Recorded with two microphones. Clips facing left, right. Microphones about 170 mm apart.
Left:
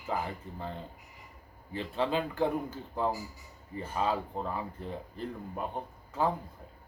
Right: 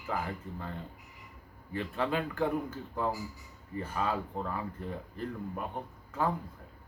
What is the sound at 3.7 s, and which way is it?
Speech, 25° left (ahead or behind).